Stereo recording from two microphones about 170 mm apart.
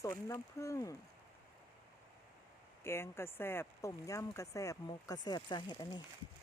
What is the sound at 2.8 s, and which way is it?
Speech, 15° left (ahead or behind).